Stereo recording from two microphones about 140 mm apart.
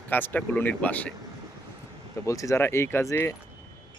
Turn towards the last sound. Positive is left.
turn(degrees=20)  # may be behind; listen again after turning